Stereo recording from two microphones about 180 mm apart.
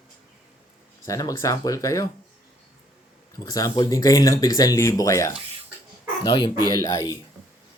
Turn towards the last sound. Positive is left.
turn(degrees=20)  # may be behind; listen again after turning